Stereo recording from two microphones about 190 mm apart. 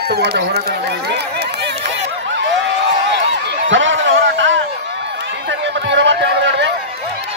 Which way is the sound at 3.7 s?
80° right.